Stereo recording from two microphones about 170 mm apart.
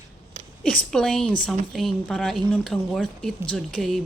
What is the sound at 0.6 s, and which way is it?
Speech, 5° left (ahead or behind).